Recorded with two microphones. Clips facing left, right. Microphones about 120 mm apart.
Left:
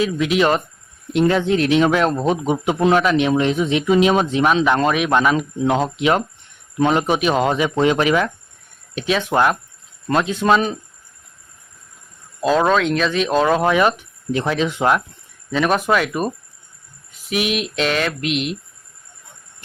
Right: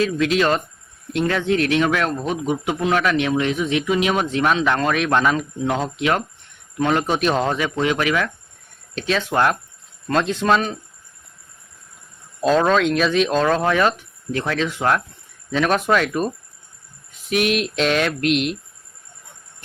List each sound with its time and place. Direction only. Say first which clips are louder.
0.0 s speech: left 1 dB; 15° left (ahead or behind)
7.2 s speech: left 2 dB; 5° left (ahead or behind); by 8.3 s 25° left (ahead or behind)
9.0 s speech: left 2 dB; 10° left (ahead or behind)
12.4 s a sound: even; 5° left (ahead or behind)
13.3 s speech: left 2 dB; 10° left (ahead or behind)
15.5 s a sound: left 1 dB; 5° left (ahead or behind)